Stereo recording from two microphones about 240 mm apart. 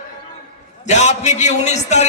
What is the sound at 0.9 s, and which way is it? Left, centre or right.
A man's voice, left.